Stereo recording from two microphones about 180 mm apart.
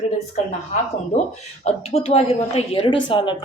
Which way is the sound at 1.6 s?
35° left (ahead or behind).